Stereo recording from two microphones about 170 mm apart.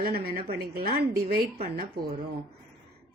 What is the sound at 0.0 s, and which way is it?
A woman's voice, 65° right (ahead or behind).